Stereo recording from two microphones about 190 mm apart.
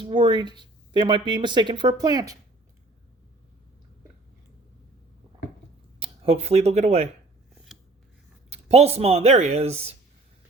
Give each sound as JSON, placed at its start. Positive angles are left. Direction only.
{"t": 0.0, "sound": "speech", "side_deg": -25}
{"t": 6.0, "sound": "speech", "side_deg": -30}
{"t": 7.5, "sound": "scissors", "side_deg": 0}
{"t": 8.4, "sound": "speech", "side_deg": -35}